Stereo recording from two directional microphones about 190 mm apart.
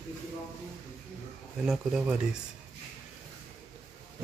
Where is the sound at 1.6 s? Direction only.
5° right (ahead or behind).